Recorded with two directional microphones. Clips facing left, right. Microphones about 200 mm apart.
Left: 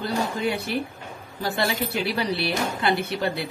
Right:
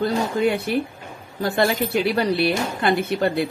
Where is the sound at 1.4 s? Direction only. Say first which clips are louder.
Right 5 dB; 55° right (ahead or behind).